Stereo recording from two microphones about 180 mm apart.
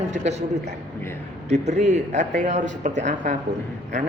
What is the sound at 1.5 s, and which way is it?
Speech, 40° right (ahead or behind).